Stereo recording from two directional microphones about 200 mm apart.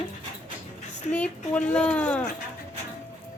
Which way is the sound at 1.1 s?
5° left (ahead or behind).